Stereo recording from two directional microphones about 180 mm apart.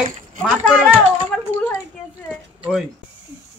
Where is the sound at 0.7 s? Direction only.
Centre (ahead or behind).